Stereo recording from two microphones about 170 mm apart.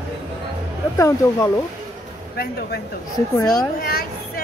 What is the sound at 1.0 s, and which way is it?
Speech, 20° left (ahead or behind).